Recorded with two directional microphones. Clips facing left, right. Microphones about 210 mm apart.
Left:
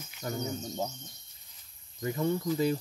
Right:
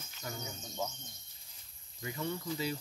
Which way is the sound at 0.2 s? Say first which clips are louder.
Left 9 dB; 40° left (ahead or behind).